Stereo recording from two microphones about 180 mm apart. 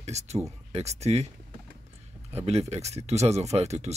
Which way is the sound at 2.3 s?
35° right (ahead or behind).